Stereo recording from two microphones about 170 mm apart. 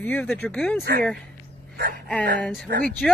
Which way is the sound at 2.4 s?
5° left (ahead or behind).